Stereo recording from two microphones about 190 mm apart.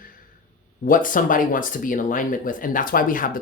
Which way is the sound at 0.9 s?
45° left (ahead or behind).